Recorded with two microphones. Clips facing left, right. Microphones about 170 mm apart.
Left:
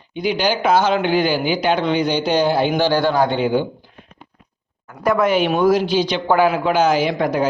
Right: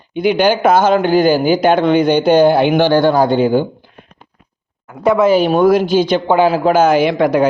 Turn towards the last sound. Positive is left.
turn(degrees=-75)  # may be behind; listen again after turning